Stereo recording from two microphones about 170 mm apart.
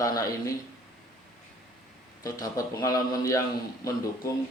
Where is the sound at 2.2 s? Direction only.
20° left (ahead or behind).